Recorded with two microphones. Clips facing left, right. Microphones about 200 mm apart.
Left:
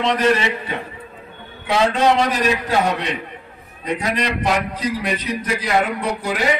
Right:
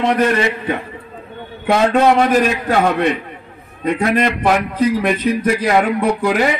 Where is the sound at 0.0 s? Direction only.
55° right (ahead or behind).